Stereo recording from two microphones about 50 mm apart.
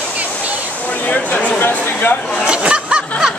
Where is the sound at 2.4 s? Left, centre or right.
Right.